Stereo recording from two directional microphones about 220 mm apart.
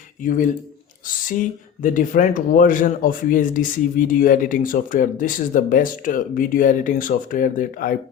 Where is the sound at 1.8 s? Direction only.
35° left (ahead or behind).